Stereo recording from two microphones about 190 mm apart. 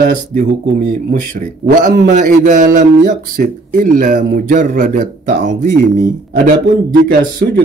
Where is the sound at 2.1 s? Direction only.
40° right (ahead or behind).